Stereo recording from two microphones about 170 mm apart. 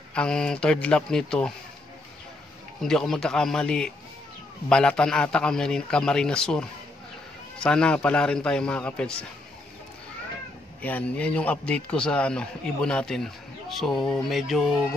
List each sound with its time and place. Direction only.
0.1 s a man's voice: 5° left (ahead or behind)
2.8 s a man's voice: centre (ahead or behind)
10.8 s a man's voice: 10° left (ahead or behind)